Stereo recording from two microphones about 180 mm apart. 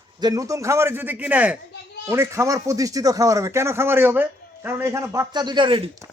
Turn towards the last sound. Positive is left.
turn(degrees=-25)  # may be behind; listen again after turning